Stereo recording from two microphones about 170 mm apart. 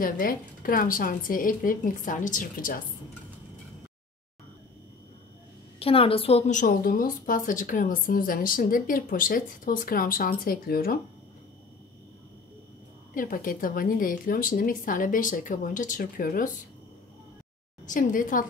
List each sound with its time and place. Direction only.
0.0 s speech: 55° left (ahead or behind)
5.8 s a woman's voice: 35° left (ahead or behind); by 11.0 s 60° left (ahead or behind)
13.1 s speech: 55° left (ahead or behind)
17.8 s speech: 50° left (ahead or behind)